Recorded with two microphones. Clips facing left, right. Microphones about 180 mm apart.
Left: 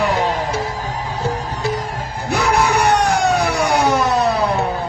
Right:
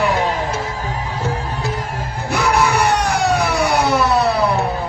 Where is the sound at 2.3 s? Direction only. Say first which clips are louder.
Even; 45° left (ahead or behind).